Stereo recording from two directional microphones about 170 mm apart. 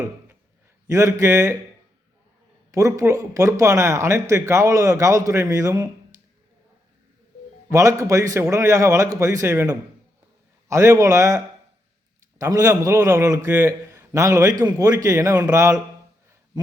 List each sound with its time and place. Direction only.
0.9 s a man's voice: 15° right (ahead or behind)
2.7 s speech: 20° right (ahead or behind)
7.7 s a man's voice: 20° right (ahead or behind)